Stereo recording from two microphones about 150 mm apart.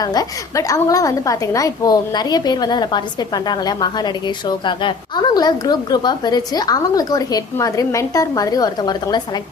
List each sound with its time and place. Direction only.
0.0 s a woman's voice: 25° left (ahead or behind)